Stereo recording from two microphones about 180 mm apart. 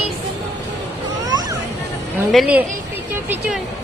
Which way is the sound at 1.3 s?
20° right (ahead or behind).